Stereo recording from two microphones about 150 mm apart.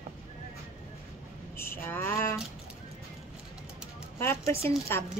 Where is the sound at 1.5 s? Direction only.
15° left (ahead or behind).